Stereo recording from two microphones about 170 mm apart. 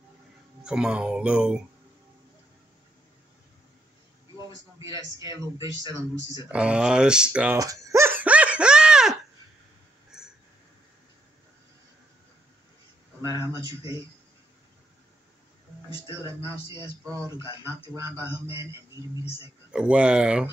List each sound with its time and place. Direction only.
0.7 s speech: 5° right (ahead or behind)
4.7 s speech: 20° right (ahead or behind)
6.5 s speech: 5° right (ahead or behind)
7.5 s a sound: 20° right (ahead or behind); by 10.3 s 5° right (ahead or behind)
13.2 s speech: 20° right (ahead or behind)
16.3 s speech: 25° right (ahead or behind)
18.2 s speech: 25° right (ahead or behind)
19.7 s speech: 5° right (ahead or behind)